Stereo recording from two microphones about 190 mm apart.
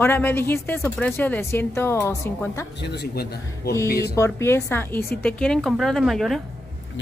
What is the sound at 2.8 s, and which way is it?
Speech, 60° left (ahead or behind).